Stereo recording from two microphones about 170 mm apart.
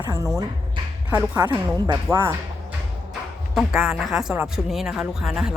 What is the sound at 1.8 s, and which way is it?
Speech, 25° right (ahead or behind).